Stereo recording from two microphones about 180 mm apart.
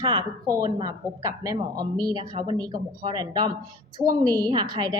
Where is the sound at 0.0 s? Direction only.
20° right (ahead or behind).